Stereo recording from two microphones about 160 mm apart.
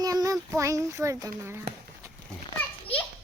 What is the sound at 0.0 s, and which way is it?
A child's voice, 25° right (ahead or behind).